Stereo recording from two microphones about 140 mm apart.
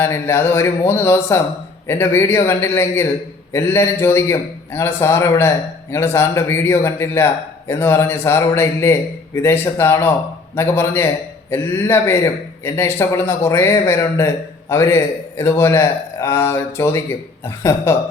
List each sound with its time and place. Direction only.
0.0 s a man's voice: 20° left (ahead or behind)